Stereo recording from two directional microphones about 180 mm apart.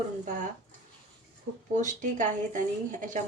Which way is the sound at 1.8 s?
45° right (ahead or behind).